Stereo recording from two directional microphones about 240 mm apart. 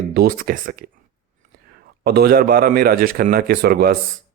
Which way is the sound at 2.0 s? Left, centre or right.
Right.